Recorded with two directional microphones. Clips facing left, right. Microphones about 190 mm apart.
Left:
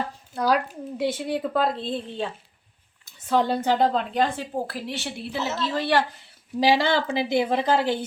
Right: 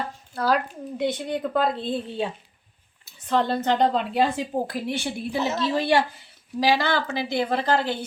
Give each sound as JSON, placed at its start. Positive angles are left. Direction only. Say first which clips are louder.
{"t": 0.3, "sound": "speech", "louder": "left 1 dB", "side_deg": 10}
{"t": 3.2, "sound": "speech", "louder": "left 1 dB", "side_deg": 10}
{"t": 4.1, "sound": "a woman's voice", "louder": "right 2 dB", "side_deg": -10}
{"t": 6.6, "sound": "speech", "louder": "left 2 dB", "side_deg": 25}